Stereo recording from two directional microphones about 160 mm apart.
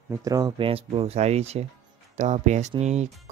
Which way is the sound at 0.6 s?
35° right (ahead or behind).